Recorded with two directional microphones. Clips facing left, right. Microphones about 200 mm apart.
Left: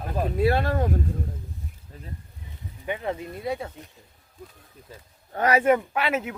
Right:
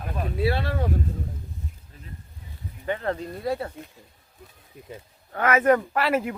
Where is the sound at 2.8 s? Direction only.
15° left (ahead or behind).